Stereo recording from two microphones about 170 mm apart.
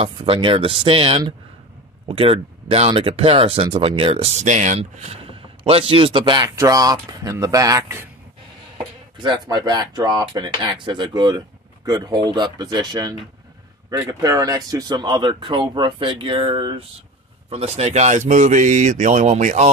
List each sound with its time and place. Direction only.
0.0 s speech: 30° right (ahead or behind); by 8.1 s 15° right (ahead or behind)
9.2 s speech: 25° right (ahead or behind); by 19.7 s 45° right (ahead or behind)